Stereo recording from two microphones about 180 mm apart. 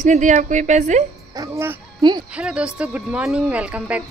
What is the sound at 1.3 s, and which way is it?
Speech, 20° right (ahead or behind).